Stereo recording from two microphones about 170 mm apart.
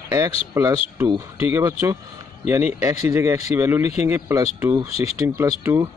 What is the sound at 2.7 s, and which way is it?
Speech, 15° right (ahead or behind).